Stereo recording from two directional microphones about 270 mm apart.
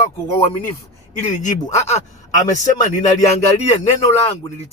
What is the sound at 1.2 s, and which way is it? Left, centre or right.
A man's voice, left.